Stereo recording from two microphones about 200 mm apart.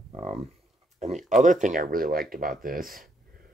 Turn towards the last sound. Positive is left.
turn(degrees=-45)  # may be behind; listen again after turning